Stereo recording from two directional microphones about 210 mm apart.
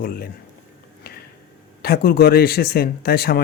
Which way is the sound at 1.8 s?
45° left (ahead or behind).